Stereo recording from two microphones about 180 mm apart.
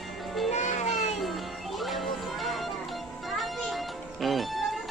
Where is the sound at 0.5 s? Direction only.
40° left (ahead or behind).